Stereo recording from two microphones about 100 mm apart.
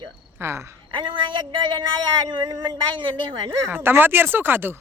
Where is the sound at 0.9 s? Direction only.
55° right (ahead or behind).